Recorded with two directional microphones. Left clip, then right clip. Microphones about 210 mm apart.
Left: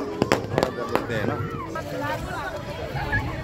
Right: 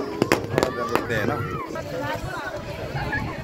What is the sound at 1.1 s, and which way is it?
Speech, 10° right (ahead or behind).